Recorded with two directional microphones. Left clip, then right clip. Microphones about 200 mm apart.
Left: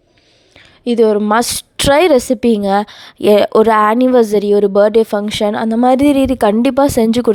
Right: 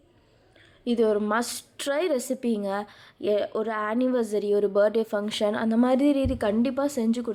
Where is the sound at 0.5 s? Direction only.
40° left (ahead or behind).